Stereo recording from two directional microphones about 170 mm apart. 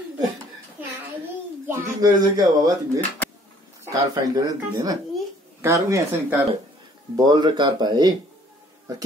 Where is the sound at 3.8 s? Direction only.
20° right (ahead or behind).